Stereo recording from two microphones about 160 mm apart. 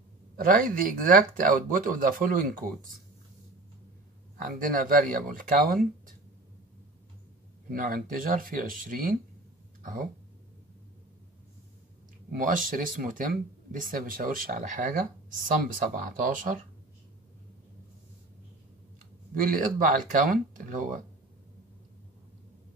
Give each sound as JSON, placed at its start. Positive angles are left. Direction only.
{"t": 0.4, "sound": "speech", "side_deg": -60}
{"t": 4.4, "sound": "speech", "side_deg": -60}
{"t": 7.7, "sound": "speech", "side_deg": -60}
{"t": 12.3, "sound": "speech", "side_deg": -60}
{"t": 19.3, "sound": "speech", "side_deg": -60}